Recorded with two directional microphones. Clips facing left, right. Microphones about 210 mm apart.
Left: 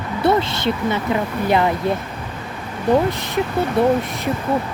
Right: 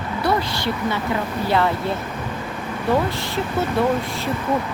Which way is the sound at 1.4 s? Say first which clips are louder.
Left 2 dB; 15° left (ahead or behind).